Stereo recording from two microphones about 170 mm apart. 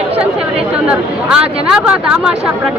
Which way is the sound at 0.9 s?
5° right (ahead or behind).